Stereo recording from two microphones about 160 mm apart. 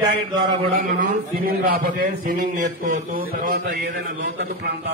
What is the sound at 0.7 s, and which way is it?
A man's voice, 60° right (ahead or behind).